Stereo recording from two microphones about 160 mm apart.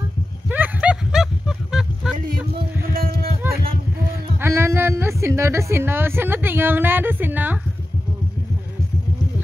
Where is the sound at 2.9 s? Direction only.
70° right (ahead or behind).